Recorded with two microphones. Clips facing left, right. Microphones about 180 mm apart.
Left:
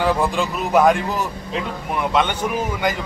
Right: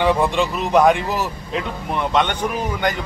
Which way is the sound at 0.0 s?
Centre (ahead or behind).